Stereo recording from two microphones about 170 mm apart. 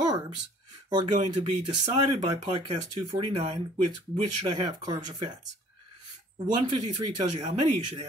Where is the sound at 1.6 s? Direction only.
30° right (ahead or behind).